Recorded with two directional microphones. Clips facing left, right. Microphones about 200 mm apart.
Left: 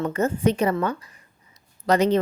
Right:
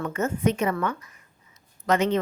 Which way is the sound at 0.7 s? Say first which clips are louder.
Left 3 dB; 30° left (ahead or behind).